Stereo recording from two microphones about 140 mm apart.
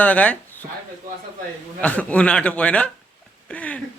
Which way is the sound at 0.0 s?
10° left (ahead or behind).